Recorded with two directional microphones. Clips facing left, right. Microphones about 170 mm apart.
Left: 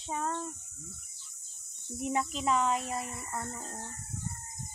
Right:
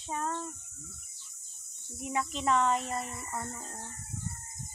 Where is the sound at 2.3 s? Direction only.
5° left (ahead or behind).